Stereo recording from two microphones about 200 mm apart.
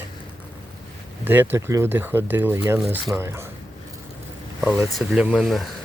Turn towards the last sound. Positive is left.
turn(degrees=0)  # may be behind; listen again after turning